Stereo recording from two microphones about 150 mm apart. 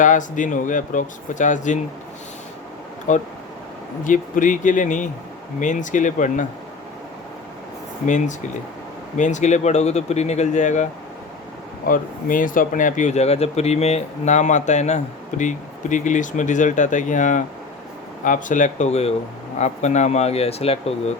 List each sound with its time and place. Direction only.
0.0 s speech: 60° left (ahead or behind)
3.1 s speech: 55° left (ahead or behind)
8.0 s speech: 55° left (ahead or behind)
11.9 s speech: 65° left (ahead or behind); by 20.9 s 40° left (ahead or behind)